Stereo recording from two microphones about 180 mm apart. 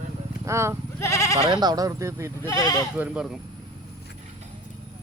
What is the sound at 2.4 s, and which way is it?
Speech, 20° left (ahead or behind).